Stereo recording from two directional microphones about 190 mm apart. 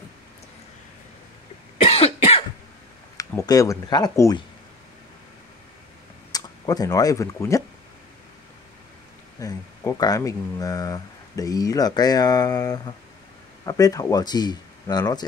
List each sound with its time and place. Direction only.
1.8 s cough: 30° left (ahead or behind)
3.2 s speech: 20° left (ahead or behind)
6.3 s speech: 20° left (ahead or behind)
9.4 s speech: 20° left (ahead or behind)